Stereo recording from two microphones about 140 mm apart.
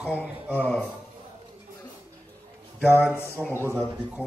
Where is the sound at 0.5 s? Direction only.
10° left (ahead or behind).